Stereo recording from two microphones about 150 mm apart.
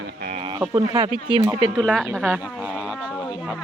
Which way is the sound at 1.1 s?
30° left (ahead or behind).